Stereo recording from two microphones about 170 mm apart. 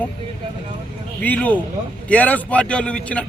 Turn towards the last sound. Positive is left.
turn(degrees=5)  # may be behind; listen again after turning